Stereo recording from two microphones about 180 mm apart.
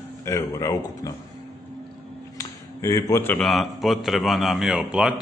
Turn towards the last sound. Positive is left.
turn(degrees=-5)  # may be behind; listen again after turning